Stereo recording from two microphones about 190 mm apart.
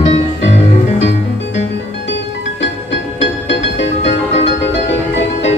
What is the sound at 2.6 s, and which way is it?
Music, 70° left (ahead or behind).